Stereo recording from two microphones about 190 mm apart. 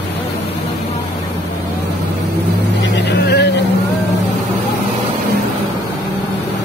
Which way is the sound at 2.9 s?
65° left (ahead or behind).